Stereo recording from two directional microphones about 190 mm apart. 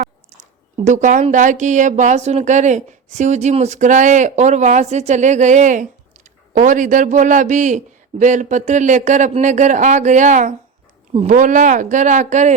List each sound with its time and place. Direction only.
0.9 s speech: 40° right (ahead or behind)